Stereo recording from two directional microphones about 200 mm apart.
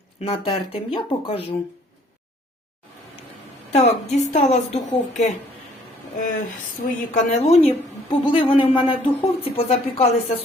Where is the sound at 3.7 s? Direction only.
35° left (ahead or behind).